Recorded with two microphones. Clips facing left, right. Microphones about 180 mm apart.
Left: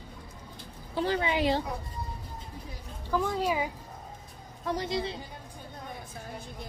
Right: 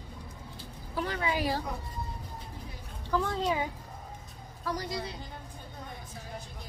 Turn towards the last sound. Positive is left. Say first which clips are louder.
# left 4 dB
turn(degrees=25)  # may be behind; listen again after turning